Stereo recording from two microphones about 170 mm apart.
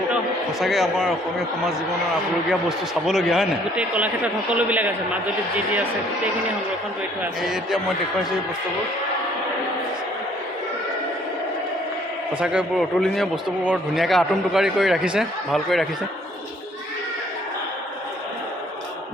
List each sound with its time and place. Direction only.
0.6 s a man's voice: centre (ahead or behind)
2.5 s a man's voice: centre (ahead or behind)
7.2 s a man's voice: 5° right (ahead or behind)
12.4 s a man's voice: 5° right (ahead or behind)